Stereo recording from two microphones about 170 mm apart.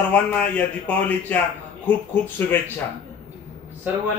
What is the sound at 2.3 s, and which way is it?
Speech, 10° left (ahead or behind).